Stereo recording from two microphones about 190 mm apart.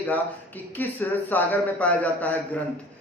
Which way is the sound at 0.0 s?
10° left (ahead or behind).